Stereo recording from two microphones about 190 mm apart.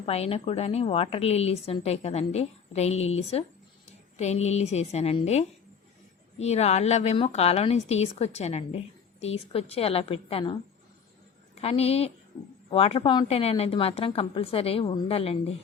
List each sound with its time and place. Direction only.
0.0 s a woman's voice: 30° left (ahead or behind)